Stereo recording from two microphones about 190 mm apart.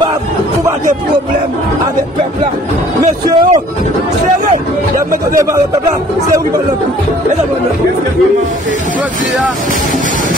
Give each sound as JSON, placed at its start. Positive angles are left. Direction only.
{"t": 3.0, "sound": "speech", "side_deg": -20}